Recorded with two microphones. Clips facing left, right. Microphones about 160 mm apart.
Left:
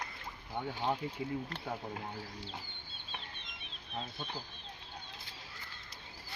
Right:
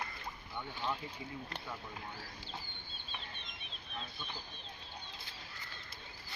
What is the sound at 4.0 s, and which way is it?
Speech, 40° left (ahead or behind).